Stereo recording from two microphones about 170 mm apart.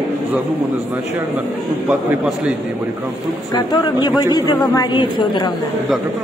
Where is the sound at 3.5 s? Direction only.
25° left (ahead or behind).